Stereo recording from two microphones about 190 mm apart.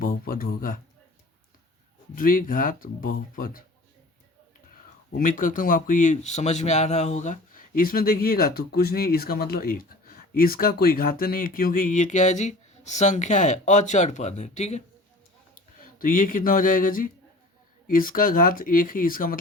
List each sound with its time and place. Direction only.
0.0 s speech: 50° left (ahead or behind)
2.1 s speech: 45° left (ahead or behind)
4.7 s speech: 45° left (ahead or behind)
15.5 s speech: 50° left (ahead or behind)